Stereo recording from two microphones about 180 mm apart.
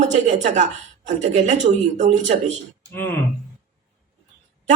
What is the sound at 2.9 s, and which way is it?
Speech, 10° left (ahead or behind).